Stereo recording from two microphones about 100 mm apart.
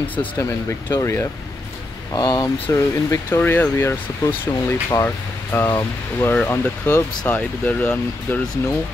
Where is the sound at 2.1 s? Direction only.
40° left (ahead or behind).